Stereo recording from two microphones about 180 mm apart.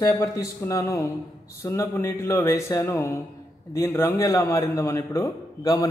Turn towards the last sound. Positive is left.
turn(degrees=20)  # may be behind; listen again after turning